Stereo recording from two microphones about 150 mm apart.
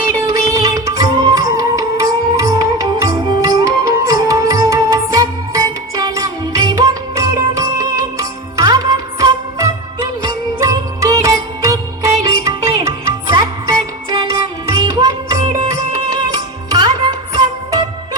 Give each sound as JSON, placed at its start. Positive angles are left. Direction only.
{"t": 0.3, "sound": "music", "side_deg": -25}